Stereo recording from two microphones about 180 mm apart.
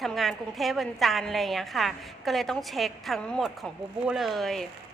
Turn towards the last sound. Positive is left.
turn(degrees=0)  # may be behind; listen again after turning